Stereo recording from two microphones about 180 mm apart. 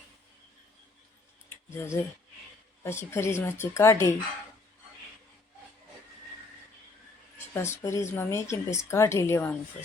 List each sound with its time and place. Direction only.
1.5 s a sound: 15° left (ahead or behind)
2.8 s speech: 15° left (ahead or behind)
7.5 s speech: 15° left (ahead or behind)